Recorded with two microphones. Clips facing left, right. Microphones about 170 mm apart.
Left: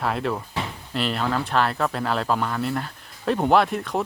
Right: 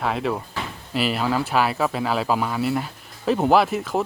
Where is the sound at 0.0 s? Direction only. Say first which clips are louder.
Right 1 dB; centre (ahead or behind).